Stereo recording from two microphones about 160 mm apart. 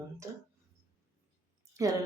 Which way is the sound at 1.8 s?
20° right (ahead or behind).